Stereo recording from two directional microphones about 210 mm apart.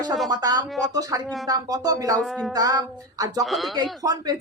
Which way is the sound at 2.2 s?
Centre (ahead or behind).